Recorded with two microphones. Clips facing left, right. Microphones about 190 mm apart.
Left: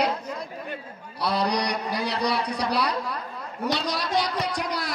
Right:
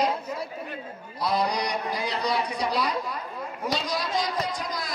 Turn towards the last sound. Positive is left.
turn(degrees=70)  # may be behind; listen again after turning